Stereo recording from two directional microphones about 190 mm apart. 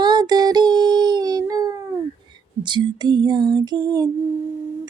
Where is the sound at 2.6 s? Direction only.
25° right (ahead or behind).